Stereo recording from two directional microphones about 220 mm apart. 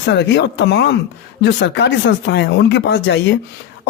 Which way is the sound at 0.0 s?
50° left (ahead or behind).